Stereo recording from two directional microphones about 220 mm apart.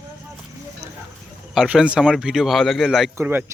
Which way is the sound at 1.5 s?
5° right (ahead or behind).